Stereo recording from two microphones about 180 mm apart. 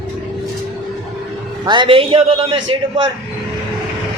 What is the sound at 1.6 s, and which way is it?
A man's voice, 25° right (ahead or behind).